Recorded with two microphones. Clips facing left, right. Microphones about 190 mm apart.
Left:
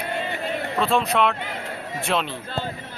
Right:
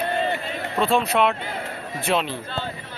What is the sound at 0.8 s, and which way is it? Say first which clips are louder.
Speech: right 1 dB; centre (ahead or behind).